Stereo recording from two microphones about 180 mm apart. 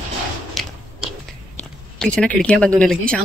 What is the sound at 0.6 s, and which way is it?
Biting, 5° right (ahead or behind).